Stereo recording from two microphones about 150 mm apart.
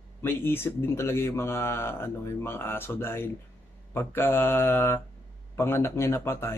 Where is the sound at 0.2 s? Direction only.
15° left (ahead or behind).